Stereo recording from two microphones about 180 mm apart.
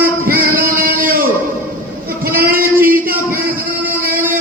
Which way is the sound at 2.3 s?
55° right (ahead or behind).